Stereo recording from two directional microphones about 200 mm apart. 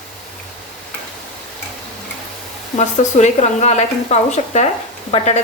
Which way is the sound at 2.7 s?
35° left (ahead or behind).